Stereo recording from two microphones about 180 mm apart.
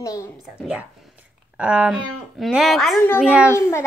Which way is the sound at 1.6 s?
5° right (ahead or behind).